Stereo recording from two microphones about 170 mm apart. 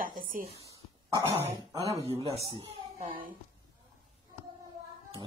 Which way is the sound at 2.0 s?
35° right (ahead or behind).